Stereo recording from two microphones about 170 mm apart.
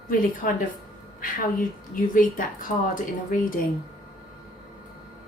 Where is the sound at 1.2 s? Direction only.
55° left (ahead or behind).